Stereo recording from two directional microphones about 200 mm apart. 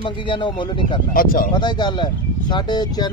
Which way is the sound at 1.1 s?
45° left (ahead or behind).